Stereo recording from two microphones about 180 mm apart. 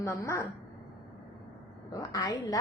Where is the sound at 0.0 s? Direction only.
15° left (ahead or behind).